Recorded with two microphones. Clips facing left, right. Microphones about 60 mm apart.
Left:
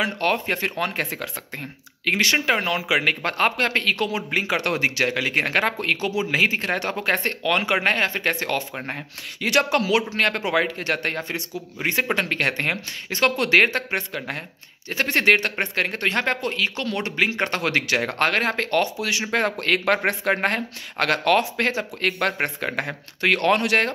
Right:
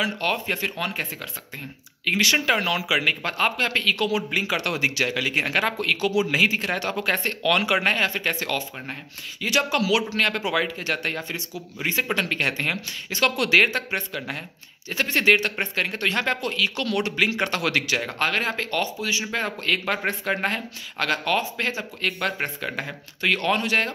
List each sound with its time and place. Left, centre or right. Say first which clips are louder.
0.0 s speech: left 2 dB; left
2.3 s speech: left 1 dB; left
2.9 s speech: left 2 dB; left
19.3 s speech: left 7 dB; left